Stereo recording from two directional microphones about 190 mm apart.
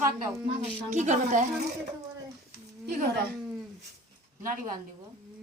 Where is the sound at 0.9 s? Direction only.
40° right (ahead or behind).